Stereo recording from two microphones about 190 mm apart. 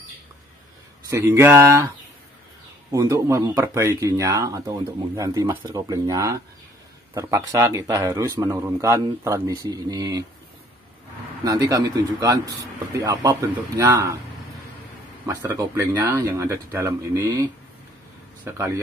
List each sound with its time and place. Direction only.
1.1 s speech: 15° right (ahead or behind)
2.9 s speech: 15° right (ahead or behind)
11.4 s speech: 15° right (ahead or behind)
15.2 s speech: 15° right (ahead or behind)